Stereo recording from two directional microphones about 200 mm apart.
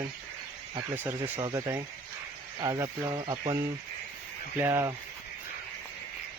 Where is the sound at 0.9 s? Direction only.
10° right (ahead or behind).